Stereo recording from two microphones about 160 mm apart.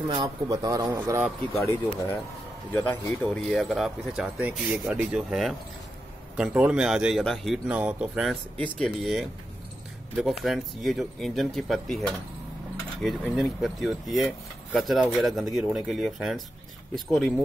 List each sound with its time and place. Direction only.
0.1 s speech: 25° right (ahead or behind)
1.7 s speech: 15° left (ahead or behind); by 17.3 s centre (ahead or behind)